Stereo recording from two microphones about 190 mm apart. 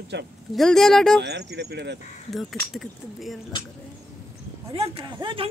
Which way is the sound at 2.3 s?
Centre (ahead or behind).